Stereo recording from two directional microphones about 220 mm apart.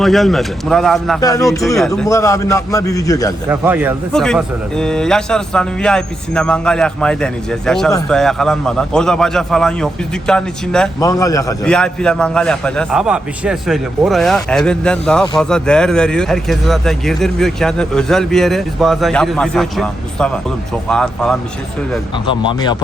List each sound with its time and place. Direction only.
0.0 s speech: centre (ahead or behind)
1.2 s a man's voice: 15° left (ahead or behind)
1.5 s speech: centre (ahead or behind)
2.0 s a man's voice: 15° left (ahead or behind)
3.5 s a man's voice: 10° right (ahead or behind)
4.1 s speech: centre (ahead or behind)
11.0 s a man's voice: 15° left (ahead or behind)
11.6 s speech: 5° left (ahead or behind)
22.3 s speech: 20° left (ahead or behind)